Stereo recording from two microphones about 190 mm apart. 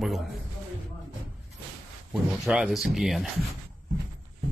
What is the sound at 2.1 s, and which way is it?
Speech, centre (ahead or behind).